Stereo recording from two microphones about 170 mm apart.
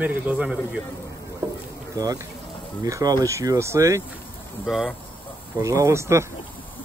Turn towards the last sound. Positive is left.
turn(degrees=-15)  # may be behind; listen again after turning